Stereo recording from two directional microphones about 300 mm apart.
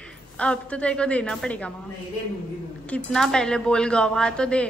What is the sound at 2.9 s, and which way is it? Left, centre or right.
A woman's voice, centre.